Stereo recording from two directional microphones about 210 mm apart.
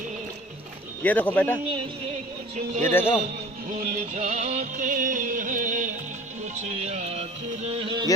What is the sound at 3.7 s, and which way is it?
Music, 40° right (ahead or behind).